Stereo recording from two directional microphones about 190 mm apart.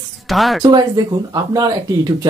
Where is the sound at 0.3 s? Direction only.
Centre (ahead or behind).